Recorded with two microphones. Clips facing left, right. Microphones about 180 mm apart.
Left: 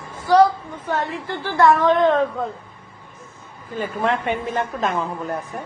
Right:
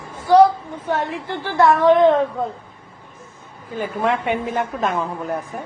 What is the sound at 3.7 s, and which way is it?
A woman's voice, 10° right (ahead or behind).